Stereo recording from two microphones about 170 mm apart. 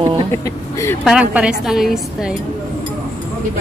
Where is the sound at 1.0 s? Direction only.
5° right (ahead or behind).